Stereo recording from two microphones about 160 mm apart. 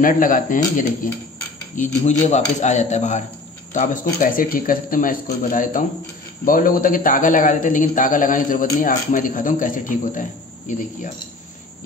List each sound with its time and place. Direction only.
0.0 s a man's voice: 55° left (ahead or behind)
1.8 s a man's voice: 45° left (ahead or behind)